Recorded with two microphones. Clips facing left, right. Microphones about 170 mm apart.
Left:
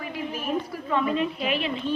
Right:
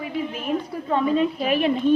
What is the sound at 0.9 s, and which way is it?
Speech, 35° right (ahead or behind).